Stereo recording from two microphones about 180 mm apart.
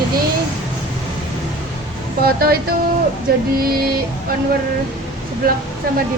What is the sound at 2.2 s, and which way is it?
Speech, 55° right (ahead or behind).